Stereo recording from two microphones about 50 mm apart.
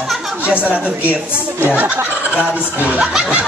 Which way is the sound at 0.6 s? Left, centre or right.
Right.